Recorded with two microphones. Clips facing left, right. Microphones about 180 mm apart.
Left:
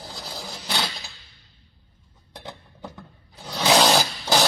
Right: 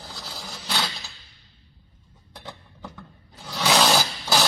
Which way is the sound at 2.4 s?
20° left (ahead or behind).